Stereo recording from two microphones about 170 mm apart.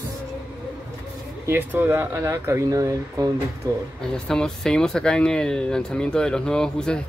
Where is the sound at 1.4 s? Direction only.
10° right (ahead or behind).